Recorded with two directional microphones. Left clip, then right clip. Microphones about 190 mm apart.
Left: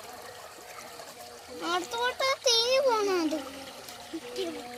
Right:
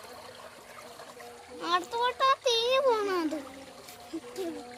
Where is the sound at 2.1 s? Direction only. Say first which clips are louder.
Even; 5° right (ahead or behind).